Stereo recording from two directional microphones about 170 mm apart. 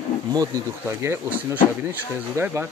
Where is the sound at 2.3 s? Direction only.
15° right (ahead or behind).